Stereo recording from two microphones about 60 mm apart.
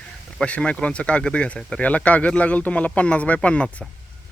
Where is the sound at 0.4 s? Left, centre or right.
Left.